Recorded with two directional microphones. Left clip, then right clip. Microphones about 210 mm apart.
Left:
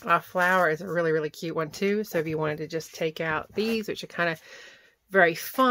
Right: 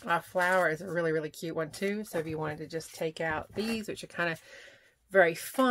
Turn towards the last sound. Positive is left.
turn(degrees=30)  # may be behind; listen again after turning